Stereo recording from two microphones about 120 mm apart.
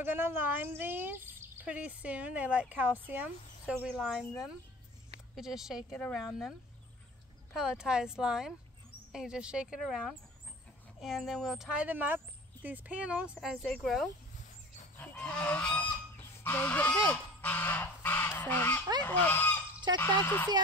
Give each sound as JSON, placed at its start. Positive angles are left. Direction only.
{"t": 0.0, "sound": "speech", "side_deg": -15}
{"t": 5.3, "sound": "speech", "side_deg": -5}
{"t": 7.5, "sound": "speech", "side_deg": -5}
{"t": 15.0, "sound": "goose", "side_deg": 15}
{"t": 19.0, "sound": "speech", "side_deg": 15}
{"t": 19.9, "sound": "speech", "side_deg": -35}